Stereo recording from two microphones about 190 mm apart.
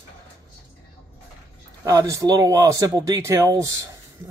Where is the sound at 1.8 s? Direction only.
15° right (ahead or behind).